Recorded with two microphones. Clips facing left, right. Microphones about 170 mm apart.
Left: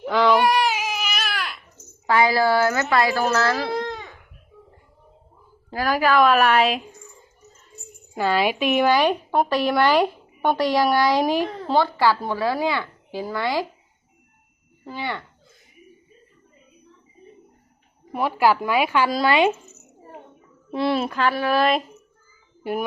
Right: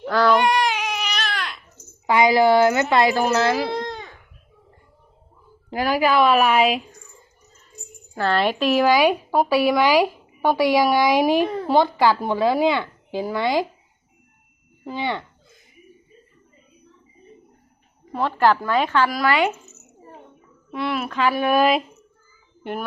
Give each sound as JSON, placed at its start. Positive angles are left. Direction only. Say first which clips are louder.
{"t": 0.0, "sound": "baby cry", "louder": "even", "side_deg": 10}
{"t": 2.0, "sound": "a woman's voice", "louder": "right 3 dB", "side_deg": -15}
{"t": 5.7, "sound": "a woman's voice", "louder": "even", "side_deg": -15}
{"t": 8.1, "sound": "a woman's voice", "louder": "even", "side_deg": 10}
{"t": 8.9, "sound": "a woman's voice", "louder": "right 2 dB", "side_deg": -10}
{"t": 14.8, "sound": "a woman's voice", "louder": "right 4 dB", "side_deg": -20}
{"t": 18.1, "sound": "a woman's voice", "louder": "right 1 dB", "side_deg": 10}
{"t": 19.1, "sound": "speech", "louder": "left 2 dB", "side_deg": 20}
{"t": 20.7, "sound": "a child's voice", "louder": "left 3 dB", "side_deg": 30}
{"t": 21.3, "sound": "a woman's voice", "louder": "right 3 dB", "side_deg": -15}